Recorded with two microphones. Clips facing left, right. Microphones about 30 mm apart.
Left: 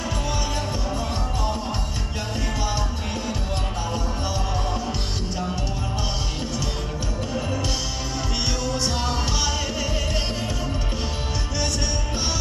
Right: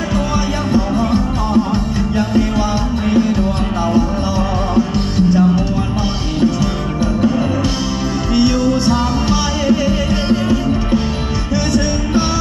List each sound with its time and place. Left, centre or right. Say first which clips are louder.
2.1 s music: right 13 dB; centre
4.7 s music: right 13 dB; centre
8.4 s music: right 13 dB; centre